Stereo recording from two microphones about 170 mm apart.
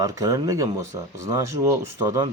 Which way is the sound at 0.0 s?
20° right (ahead or behind).